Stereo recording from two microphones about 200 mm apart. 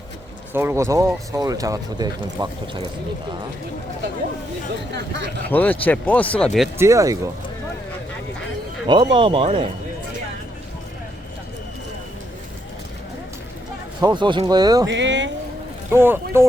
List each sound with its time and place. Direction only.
0.5 s speech: 10° right (ahead or behind)
4.9 s speech: 60° right (ahead or behind)
5.5 s speech: 10° left (ahead or behind)
6.7 s speech: 15° right (ahead or behind)
8.9 s speech: 25° right (ahead or behind)
14.0 s speech: 20° right (ahead or behind)
14.8 s speech: 65° right (ahead or behind)
15.9 s speech: 10° right (ahead or behind)